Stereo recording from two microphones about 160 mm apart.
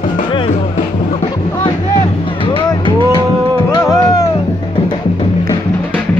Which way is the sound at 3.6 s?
20° left (ahead or behind).